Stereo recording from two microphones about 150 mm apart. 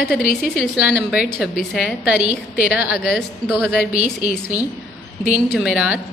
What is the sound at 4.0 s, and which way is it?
A woman's voice, 10° right (ahead or behind).